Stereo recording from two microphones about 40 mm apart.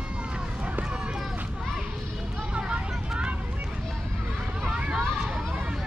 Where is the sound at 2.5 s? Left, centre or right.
Right.